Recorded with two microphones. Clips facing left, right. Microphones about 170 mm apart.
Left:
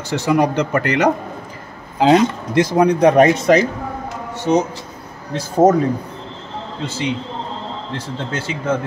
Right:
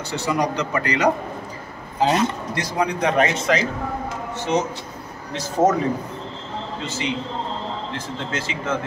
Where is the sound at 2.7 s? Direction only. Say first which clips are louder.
Left 8 dB; 45° left (ahead or behind).